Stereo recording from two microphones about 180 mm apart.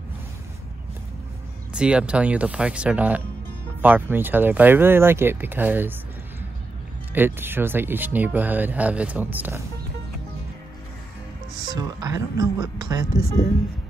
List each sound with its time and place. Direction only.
1.7 s speech: 5° right (ahead or behind)
7.2 s speech: 10° right (ahead or behind)
11.6 s speech: 20° right (ahead or behind)